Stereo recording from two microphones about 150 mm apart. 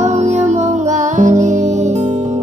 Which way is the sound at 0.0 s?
50° right (ahead or behind).